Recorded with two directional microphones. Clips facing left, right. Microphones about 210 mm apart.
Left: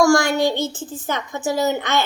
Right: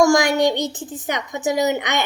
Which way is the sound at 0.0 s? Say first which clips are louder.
Right 1 dB; 15° right (ahead or behind).